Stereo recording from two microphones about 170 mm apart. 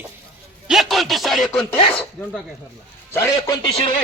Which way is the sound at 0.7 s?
Centre (ahead or behind).